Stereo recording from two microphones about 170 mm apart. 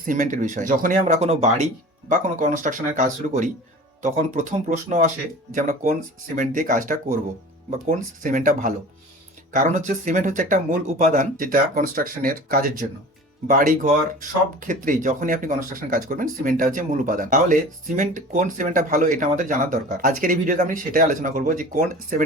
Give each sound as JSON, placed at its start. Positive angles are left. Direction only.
{"t": 0.0, "sound": "speech", "side_deg": -50}